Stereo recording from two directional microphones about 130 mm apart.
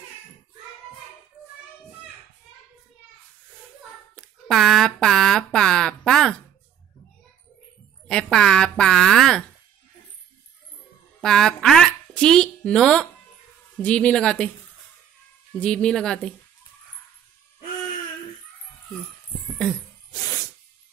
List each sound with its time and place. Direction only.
4.1 s speech: centre (ahead or behind)
8.1 s a woman's voice: 5° left (ahead or behind)
11.1 s speech: 5° left (ahead or behind)
15.6 s a woman's voice: 10° left (ahead or behind)
19.4 s a sound: centre (ahead or behind)
20.1 s a sound: 30° left (ahead or behind)